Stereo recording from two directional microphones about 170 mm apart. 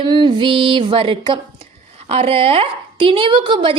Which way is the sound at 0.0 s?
30° right (ahead or behind).